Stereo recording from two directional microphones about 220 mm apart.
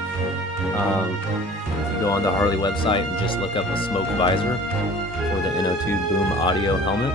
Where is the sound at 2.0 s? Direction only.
15° left (ahead or behind).